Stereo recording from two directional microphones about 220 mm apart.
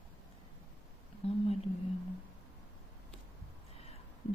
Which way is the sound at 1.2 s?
25° left (ahead or behind).